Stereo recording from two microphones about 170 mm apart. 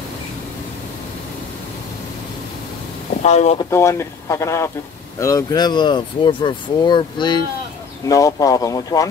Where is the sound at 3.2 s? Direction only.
40° left (ahead or behind).